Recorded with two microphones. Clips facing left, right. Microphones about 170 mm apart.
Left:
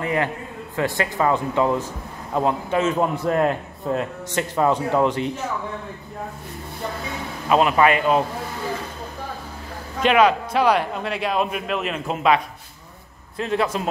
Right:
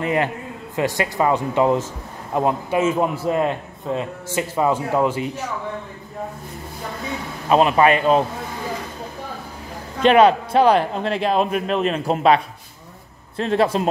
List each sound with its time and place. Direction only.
0.0 s a man's voice: 20° right (ahead or behind); by 5.3 s 5° right (ahead or behind)
7.4 s a man's voice: 25° right (ahead or behind)
10.0 s a man's voice: 30° right (ahead or behind)
13.4 s a man's voice: 35° right (ahead or behind)